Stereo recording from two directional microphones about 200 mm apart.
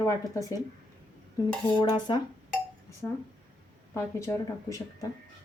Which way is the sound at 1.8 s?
20° left (ahead or behind).